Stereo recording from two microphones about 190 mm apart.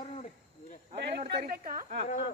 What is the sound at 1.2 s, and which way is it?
Speech, 55° right (ahead or behind).